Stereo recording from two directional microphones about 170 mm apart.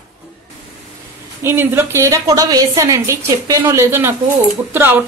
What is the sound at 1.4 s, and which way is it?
Speech, 15° right (ahead or behind).